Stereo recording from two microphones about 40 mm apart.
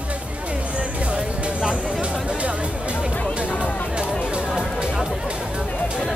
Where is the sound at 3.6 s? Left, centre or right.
Left.